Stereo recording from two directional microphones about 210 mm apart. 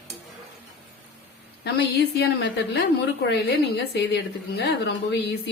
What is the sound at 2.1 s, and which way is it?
Speech, 50° left (ahead or behind).